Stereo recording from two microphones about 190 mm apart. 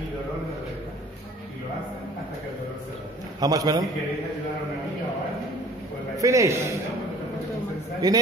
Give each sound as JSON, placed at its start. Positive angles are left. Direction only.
{"t": 3.3, "sound": "a man's voice", "side_deg": -20}
{"t": 6.1, "sound": "a man's voice", "side_deg": -15}
{"t": 8.0, "sound": "a man's voice", "side_deg": -20}